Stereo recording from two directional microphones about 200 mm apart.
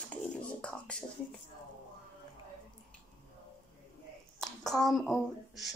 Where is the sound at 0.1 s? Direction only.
5° left (ahead or behind).